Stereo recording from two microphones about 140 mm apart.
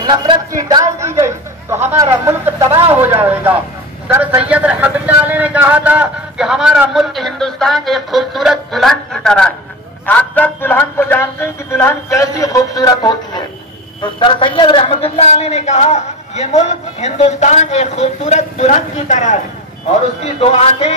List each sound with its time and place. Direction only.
0.0 s a woman's voice: 35° right (ahead or behind); by 19.3 s 60° left (ahead or behind)